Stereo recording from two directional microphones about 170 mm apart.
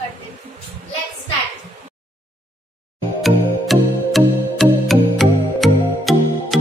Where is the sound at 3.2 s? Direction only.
Centre (ahead or behind).